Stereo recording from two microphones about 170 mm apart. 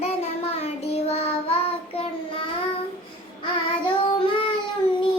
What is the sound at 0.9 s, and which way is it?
Child singing, 35° left (ahead or behind).